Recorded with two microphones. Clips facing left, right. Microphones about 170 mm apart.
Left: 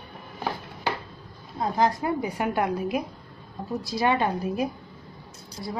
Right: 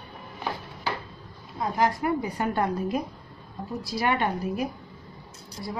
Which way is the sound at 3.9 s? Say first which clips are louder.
Left 2 dB; 20° left (ahead or behind).